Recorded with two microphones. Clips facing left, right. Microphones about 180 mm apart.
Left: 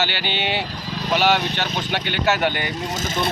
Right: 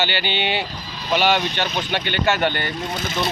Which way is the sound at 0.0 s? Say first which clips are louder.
Right 1 dB; 5° left (ahead or behind).